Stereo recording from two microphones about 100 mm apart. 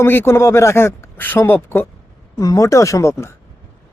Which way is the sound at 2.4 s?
35° left (ahead or behind).